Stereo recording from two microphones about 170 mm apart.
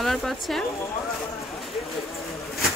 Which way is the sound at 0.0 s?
Centre (ahead or behind).